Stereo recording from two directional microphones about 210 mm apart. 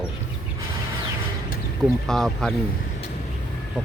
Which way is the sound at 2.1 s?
Centre (ahead or behind).